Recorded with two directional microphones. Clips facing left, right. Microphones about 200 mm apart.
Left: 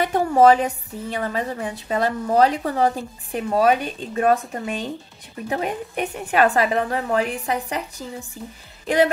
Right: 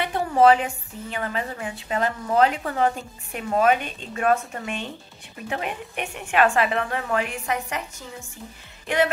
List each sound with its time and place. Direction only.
0.0 s a woman's voice: 45° left (ahead or behind)
8.8 s music: 35° left (ahead or behind)